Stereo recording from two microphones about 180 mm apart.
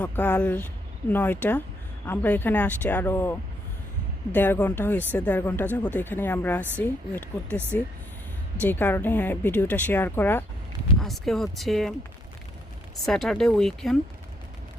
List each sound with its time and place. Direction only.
0.0 s speech: 10° left (ahead or behind)
13.1 s speech: centre (ahead or behind)